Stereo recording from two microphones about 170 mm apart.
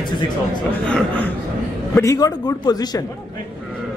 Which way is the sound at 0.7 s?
10° left (ahead or behind).